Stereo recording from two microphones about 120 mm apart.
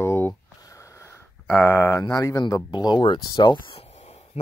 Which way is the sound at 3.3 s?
45° left (ahead or behind).